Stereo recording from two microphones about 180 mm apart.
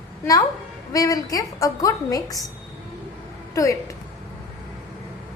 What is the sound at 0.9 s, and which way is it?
A woman's voice, 20° left (ahead or behind).